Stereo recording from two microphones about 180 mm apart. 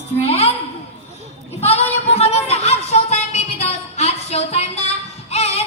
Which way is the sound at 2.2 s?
35° left (ahead or behind).